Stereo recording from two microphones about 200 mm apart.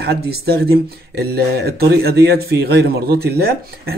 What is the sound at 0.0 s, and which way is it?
Speech, 55° right (ahead or behind).